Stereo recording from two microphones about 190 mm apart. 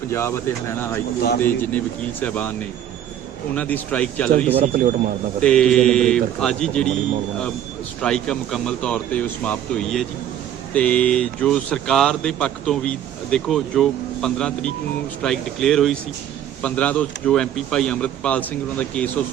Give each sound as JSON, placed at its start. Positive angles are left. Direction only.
{"t": 0.1, "sound": "speech", "side_deg": 15}
{"t": 4.5, "sound": "speech", "side_deg": -45}
{"t": 5.4, "sound": "speech", "side_deg": 5}
{"t": 8.0, "sound": "speech", "side_deg": 5}